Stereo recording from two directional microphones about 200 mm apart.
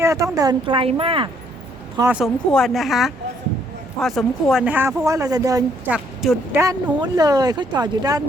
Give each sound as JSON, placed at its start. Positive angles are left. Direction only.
{"t": 0.0, "sound": "speech", "side_deg": -15}
{"t": 2.0, "sound": "speech", "side_deg": -10}